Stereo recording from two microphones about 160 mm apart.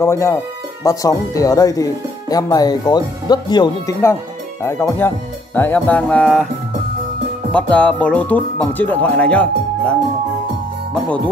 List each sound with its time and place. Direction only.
0.0 s speech: 15° left (ahead or behind)
4.6 s speech: 15° left (ahead or behind)
7.5 s speech: 10° left (ahead or behind)